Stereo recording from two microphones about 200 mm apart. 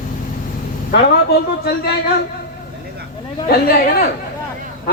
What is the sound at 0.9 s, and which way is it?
Speech, 55° left (ahead or behind).